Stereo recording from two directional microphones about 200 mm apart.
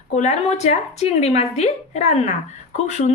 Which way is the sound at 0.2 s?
35° left (ahead or behind).